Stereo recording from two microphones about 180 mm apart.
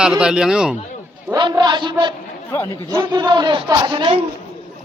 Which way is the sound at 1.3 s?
25° right (ahead or behind).